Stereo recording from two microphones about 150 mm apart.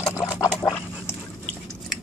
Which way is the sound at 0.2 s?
25° left (ahead or behind).